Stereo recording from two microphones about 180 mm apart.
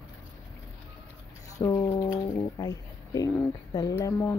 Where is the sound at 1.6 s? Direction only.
20° left (ahead or behind).